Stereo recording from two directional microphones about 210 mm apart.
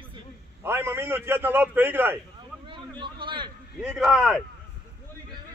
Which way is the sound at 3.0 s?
20° right (ahead or behind).